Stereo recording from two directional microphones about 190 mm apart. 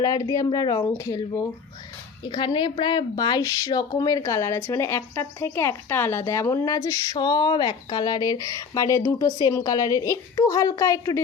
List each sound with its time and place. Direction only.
0.0 s a woman's voice: 15° left (ahead or behind)